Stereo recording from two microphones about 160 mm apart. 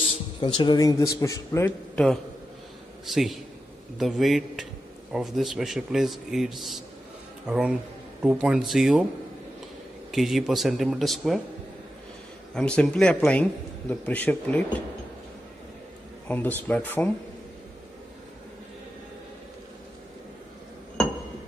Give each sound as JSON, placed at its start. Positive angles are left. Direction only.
{"t": 0.1, "sound": "speech", "side_deg": 30}
{"t": 3.1, "sound": "speech", "side_deg": 0}
{"t": 10.1, "sound": "speech", "side_deg": 0}
{"t": 12.5, "sound": "a man's voice", "side_deg": 5}
{"t": 16.3, "sound": "a man's voice", "side_deg": 10}